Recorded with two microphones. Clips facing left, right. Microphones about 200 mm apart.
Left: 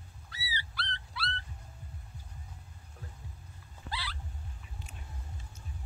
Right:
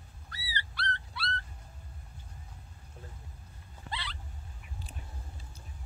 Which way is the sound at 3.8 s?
5° left (ahead or behind).